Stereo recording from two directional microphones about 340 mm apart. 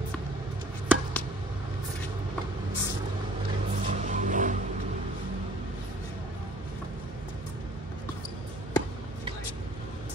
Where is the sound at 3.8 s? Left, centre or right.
Right.